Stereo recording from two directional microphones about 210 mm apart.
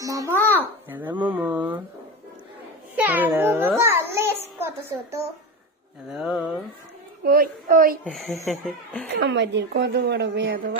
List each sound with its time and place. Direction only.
0.0 s babbling: 15° right (ahead or behind)
0.3 s babbling: 10° left (ahead or behind)
0.8 s speech: 10° right (ahead or behind)
3.0 s a sound: 10° right (ahead or behind)
7.2 s a child's voice: 45° right (ahead or behind)
8.0 s a sound: centre (ahead or behind)
9.1 s speech: 55° right (ahead or behind)